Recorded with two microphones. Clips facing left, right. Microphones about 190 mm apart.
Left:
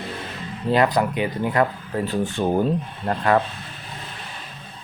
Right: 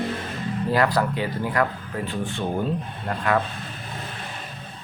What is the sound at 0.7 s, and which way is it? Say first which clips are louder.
Speech: left 3 dB; 20° left (ahead or behind).